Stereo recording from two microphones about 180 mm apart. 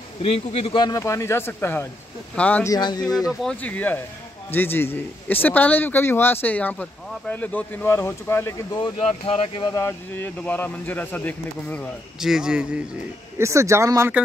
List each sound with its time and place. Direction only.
0.2 s a man's voice: 35° left (ahead or behind); by 2.7 s 5° left (ahead or behind)
2.7 s speech: 20° left (ahead or behind)
3.3 s a man's voice: 5° left (ahead or behind)
9.0 s speech: 35° left (ahead or behind)
9.8 s a man's voice: 15° left (ahead or behind)
12.2 s a man's voice: 5° right (ahead or behind)
13.4 s speech: 15° right (ahead or behind)